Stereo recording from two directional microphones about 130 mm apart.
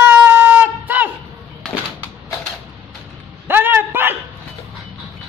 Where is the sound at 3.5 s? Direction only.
15° right (ahead or behind).